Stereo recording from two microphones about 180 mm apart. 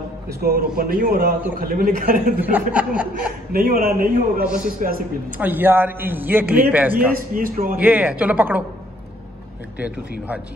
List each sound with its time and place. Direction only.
0.4 s a man's voice: 60° right (ahead or behind)
2.5 s a man's voice: 5° right (ahead or behind)
3.5 s a man's voice: 55° right (ahead or behind)
5.4 s a man's voice: 10° right (ahead or behind)
7.3 s a man's voice: 50° right (ahead or behind)
7.8 s a man's voice: 10° right (ahead or behind)